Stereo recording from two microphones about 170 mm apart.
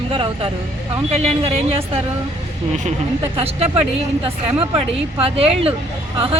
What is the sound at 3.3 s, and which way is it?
Speech, 35° right (ahead or behind).